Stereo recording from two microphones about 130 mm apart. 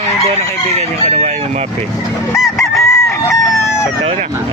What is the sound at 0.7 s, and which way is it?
Speech, 60° right (ahead or behind).